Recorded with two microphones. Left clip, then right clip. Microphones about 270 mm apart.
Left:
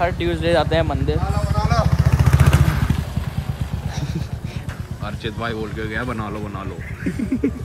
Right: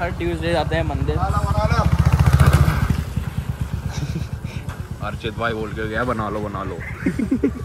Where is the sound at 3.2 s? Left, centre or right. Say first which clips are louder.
Left 1 dB; centre.